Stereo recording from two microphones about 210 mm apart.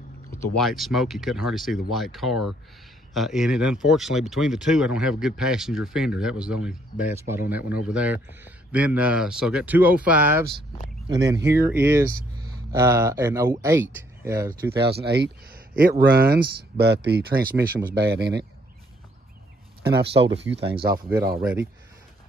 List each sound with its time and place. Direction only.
0.6 s speech: centre (ahead or behind)
14.5 s speech: 50° right (ahead or behind)
19.8 s speech: 50° right (ahead or behind)
20.9 s speech: 20° right (ahead or behind)